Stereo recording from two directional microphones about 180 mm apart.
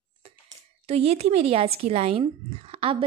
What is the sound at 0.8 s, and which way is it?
Speech, 35° right (ahead or behind).